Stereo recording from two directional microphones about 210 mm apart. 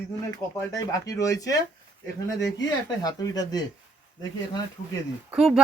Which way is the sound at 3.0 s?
20° left (ahead or behind).